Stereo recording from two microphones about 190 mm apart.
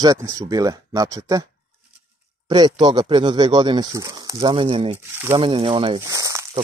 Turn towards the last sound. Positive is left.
turn(degrees=-15)  # may be behind; listen again after turning